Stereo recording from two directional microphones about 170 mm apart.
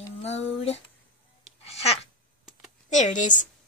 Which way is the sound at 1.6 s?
35° left (ahead or behind).